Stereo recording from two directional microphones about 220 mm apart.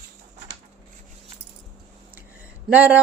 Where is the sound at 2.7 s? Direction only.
5° right (ahead or behind).